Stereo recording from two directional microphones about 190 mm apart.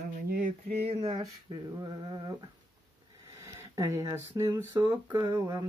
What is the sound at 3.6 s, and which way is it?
Speech, 15° right (ahead or behind).